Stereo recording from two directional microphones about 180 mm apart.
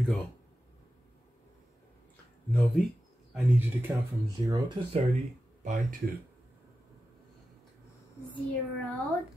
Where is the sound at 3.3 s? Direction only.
10° right (ahead or behind).